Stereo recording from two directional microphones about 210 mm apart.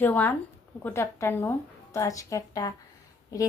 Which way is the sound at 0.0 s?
10° left (ahead or behind).